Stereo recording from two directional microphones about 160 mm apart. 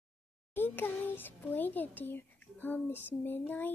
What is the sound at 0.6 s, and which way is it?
A child's voice, 10° left (ahead or behind).